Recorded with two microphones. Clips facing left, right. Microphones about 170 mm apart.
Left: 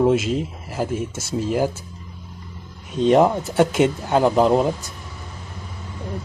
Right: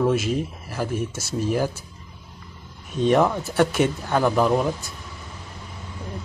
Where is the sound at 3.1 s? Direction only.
20° left (ahead or behind).